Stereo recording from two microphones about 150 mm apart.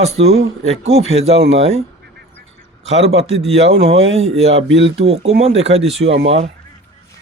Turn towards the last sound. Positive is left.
turn(degrees=-45)  # may be behind; listen again after turning